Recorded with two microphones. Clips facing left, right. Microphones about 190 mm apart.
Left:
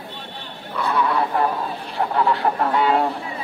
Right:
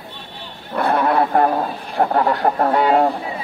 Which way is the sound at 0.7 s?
55° right (ahead or behind).